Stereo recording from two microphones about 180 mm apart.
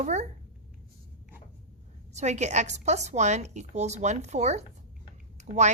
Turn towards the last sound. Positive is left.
turn(degrees=-40)  # may be behind; listen again after turning